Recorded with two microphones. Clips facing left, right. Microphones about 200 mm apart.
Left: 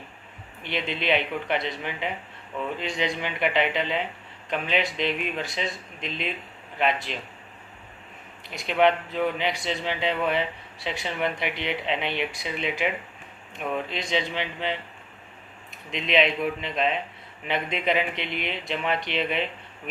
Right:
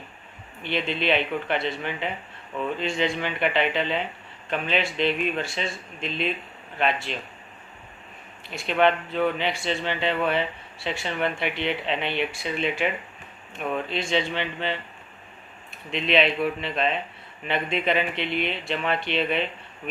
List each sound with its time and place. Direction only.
0.6 s speech: 20° left (ahead or behind)
8.5 s speech: 15° left (ahead or behind)
13.9 s speech: 15° left (ahead or behind)